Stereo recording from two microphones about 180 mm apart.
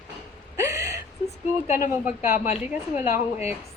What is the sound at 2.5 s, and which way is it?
Speech, 40° left (ahead or behind).